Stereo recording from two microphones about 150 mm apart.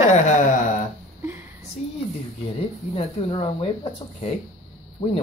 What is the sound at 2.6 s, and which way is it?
Speech, 40° left (ahead or behind).